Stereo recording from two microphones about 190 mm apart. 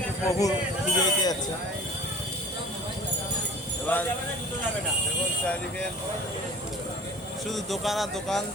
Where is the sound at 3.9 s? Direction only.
5° left (ahead or behind).